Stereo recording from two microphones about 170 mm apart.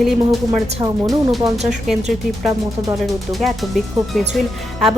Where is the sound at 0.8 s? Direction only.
25° right (ahead or behind).